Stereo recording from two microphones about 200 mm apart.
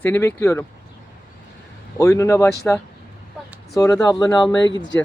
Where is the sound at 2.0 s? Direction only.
15° left (ahead or behind).